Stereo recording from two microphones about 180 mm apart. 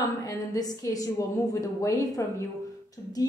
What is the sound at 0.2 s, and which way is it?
A woman's voice, 20° left (ahead or behind).